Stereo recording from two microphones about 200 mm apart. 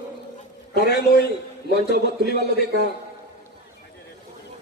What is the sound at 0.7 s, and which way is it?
A man's voice, 55° left (ahead or behind).